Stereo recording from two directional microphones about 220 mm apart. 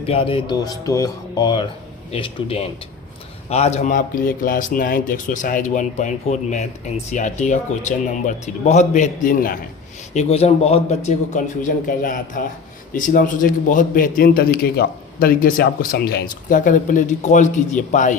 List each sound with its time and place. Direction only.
0.0 s a man's voice: 25° left (ahead or behind)
10.2 s a man's voice: 30° left (ahead or behind)